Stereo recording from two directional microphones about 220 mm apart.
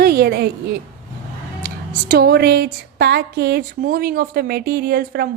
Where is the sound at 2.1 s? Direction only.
45° right (ahead or behind).